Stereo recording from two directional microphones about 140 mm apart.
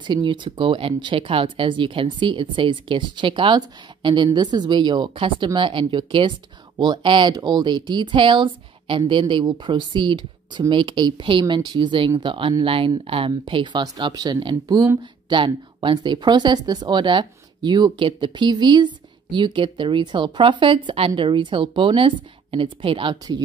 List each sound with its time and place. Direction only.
0.0 s speech: 35° right (ahead or behind)